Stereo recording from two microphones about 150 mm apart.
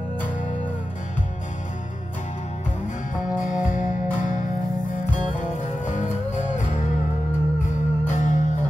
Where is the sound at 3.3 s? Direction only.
60° left (ahead or behind).